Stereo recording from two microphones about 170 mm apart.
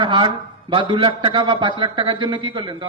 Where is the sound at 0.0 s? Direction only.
30° right (ahead or behind).